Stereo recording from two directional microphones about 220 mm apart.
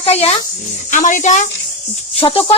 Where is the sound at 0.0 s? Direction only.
25° left (ahead or behind).